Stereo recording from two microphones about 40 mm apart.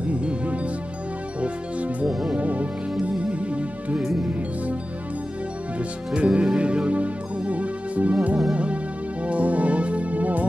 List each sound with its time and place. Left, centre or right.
0.0 s music: right
6.1 s music: right